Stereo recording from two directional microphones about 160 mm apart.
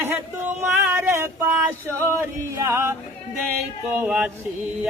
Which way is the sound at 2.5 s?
15° right (ahead or behind).